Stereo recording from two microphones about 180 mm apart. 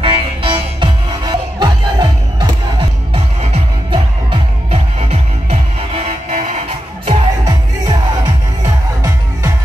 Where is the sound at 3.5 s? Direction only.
30° right (ahead or behind).